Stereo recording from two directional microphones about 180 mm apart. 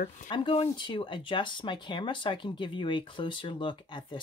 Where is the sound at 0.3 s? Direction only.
30° left (ahead or behind).